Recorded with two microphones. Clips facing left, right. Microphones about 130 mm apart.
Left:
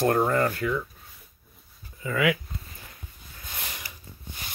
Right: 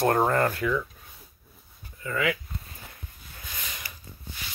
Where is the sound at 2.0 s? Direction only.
10° left (ahead or behind).